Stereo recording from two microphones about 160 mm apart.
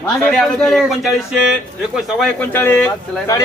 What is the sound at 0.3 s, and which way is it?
Speech, 5° left (ahead or behind).